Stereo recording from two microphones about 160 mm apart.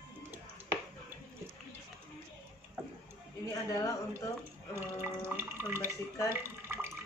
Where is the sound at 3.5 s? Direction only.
20° left (ahead or behind).